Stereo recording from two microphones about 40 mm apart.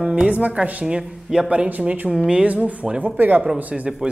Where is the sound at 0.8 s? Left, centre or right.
Right.